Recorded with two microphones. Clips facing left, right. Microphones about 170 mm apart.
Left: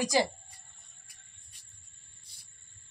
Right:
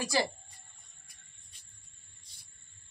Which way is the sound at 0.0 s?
15° left (ahead or behind).